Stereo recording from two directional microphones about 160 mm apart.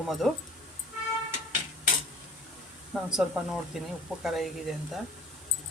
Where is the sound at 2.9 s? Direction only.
Centre (ahead or behind).